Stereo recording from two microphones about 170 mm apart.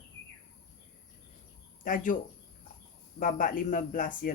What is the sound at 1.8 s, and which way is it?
Speech, 50° left (ahead or behind).